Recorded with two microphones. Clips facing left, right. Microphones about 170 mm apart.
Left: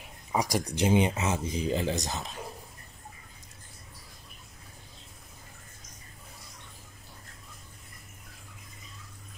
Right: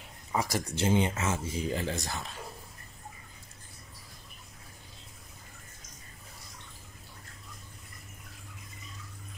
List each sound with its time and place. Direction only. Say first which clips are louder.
0.3 s speech: left 2 dB; 15° left (ahead or behind)